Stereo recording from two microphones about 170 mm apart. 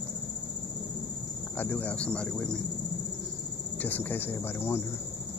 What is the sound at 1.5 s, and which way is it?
Speech, 10° left (ahead or behind).